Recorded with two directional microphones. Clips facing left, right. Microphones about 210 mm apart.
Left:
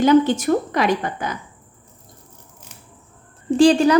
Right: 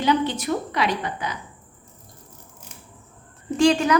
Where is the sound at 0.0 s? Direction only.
45° left (ahead or behind).